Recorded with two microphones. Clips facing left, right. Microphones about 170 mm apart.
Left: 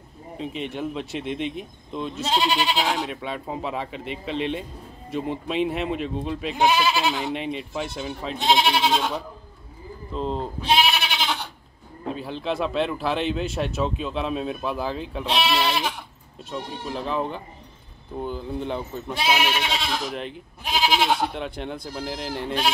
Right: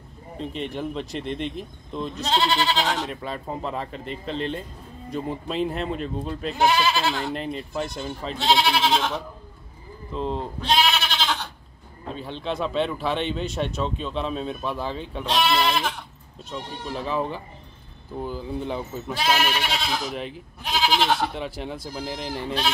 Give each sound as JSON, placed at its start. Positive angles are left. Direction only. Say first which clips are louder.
{"t": 0.4, "sound": "speech", "louder": "even", "side_deg": 0}
{"t": 6.6, "sound": "speech", "louder": "even", "side_deg": 15}
{"t": 7.2, "sound": "speech", "louder": "left 1 dB", "side_deg": 0}
{"t": 8.4, "sound": "speech", "louder": "even", "side_deg": 20}
{"t": 10.1, "sound": "bleat", "louder": "even", "side_deg": 0}
{"t": 12.1, "sound": "speech", "louder": "left 2 dB", "side_deg": 5}
{"t": 19.2, "sound": "speech", "louder": "even", "side_deg": 10}
{"t": 20.6, "sound": "goat", "louder": "even", "side_deg": 10}
{"t": 21.3, "sound": "speech", "louder": "even", "side_deg": 0}